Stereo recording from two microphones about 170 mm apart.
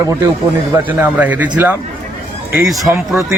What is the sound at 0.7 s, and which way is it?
A man's voice, 10° right (ahead or behind).